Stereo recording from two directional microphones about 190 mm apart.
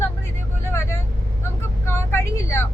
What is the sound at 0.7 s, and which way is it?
Vehicle, 15° left (ahead or behind).